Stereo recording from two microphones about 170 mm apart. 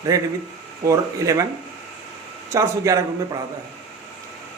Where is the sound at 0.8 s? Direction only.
20° right (ahead or behind).